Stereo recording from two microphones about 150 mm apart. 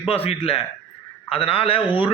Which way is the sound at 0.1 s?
40° left (ahead or behind).